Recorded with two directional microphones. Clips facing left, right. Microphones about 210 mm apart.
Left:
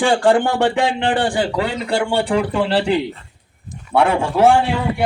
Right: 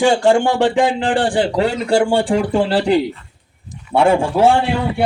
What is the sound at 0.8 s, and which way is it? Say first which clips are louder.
Speech: right 2 dB; 50° right (ahead or behind).